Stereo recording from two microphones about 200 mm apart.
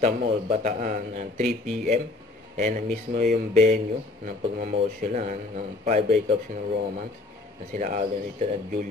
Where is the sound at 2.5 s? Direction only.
40° right (ahead or behind).